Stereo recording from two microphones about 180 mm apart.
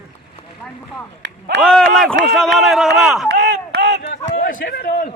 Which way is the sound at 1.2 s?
80° right.